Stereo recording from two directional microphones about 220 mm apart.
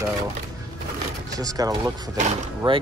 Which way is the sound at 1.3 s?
15° right (ahead or behind).